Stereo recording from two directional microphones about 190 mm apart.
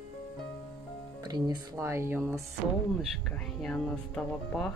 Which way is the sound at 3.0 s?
5° left (ahead or behind).